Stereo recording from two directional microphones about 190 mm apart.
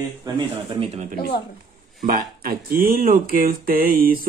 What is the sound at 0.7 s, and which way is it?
Speech, 30° right (ahead or behind).